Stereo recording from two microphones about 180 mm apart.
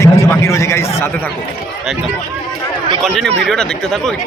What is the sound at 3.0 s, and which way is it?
Speech, centre (ahead or behind).